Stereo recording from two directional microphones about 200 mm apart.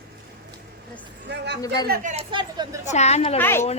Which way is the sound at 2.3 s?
20° right (ahead or behind).